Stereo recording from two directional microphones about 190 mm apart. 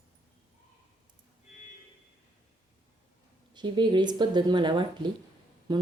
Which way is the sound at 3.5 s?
25° right (ahead or behind).